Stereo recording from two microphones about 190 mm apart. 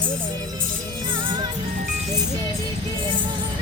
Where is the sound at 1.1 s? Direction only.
25° right (ahead or behind).